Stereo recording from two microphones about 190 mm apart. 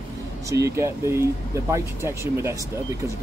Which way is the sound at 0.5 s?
15° right (ahead or behind).